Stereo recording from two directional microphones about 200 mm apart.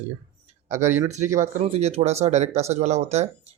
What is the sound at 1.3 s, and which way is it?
Speech, 40° right (ahead or behind).